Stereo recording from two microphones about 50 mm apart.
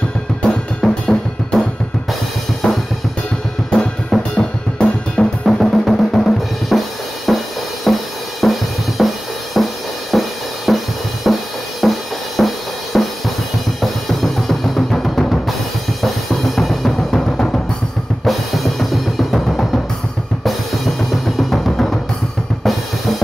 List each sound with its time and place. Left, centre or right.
0.4 s drum kit: centre
2.6 s drum kit: centre
4.1 s drum kit: centre
4.7 s drum kit: centre
5.4 s drum: centre
7.2 s music: centre
11.3 s drum: centre
16.0 s drum kit: centre
18.2 s music: centre
20.4 s drum kit: centre